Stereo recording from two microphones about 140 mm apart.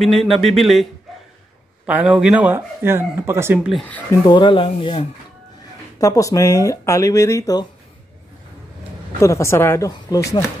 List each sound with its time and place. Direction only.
0.0 s speech: centre (ahead or behind)
1.9 s speech: 10° right (ahead or behind)
4.1 s speech: 35° left (ahead or behind)
5.9 s speech: 25° left (ahead or behind)
9.2 s speech: 20° left (ahead or behind)